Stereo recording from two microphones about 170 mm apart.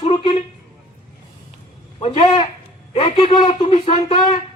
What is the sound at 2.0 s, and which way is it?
Speech, 40° left (ahead or behind).